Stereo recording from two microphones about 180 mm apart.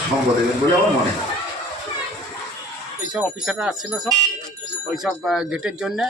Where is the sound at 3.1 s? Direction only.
5° right (ahead or behind).